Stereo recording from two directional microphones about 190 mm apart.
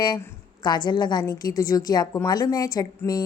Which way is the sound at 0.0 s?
20° left (ahead or behind).